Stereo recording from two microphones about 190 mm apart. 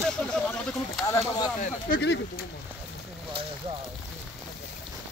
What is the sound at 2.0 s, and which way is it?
Speech, 65° left (ahead or behind).